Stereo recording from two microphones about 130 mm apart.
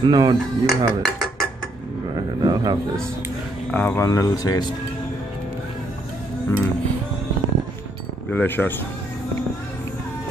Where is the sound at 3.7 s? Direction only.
15° left (ahead or behind).